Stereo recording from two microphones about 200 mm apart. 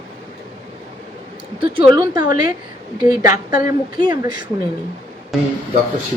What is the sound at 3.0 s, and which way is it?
Speech, 20° right (ahead or behind).